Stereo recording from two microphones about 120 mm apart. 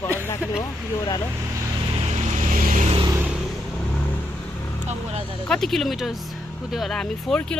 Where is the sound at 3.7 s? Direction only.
10° left (ahead or behind).